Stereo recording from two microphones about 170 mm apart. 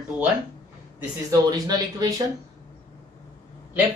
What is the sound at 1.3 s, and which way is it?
Speech, 20° right (ahead or behind).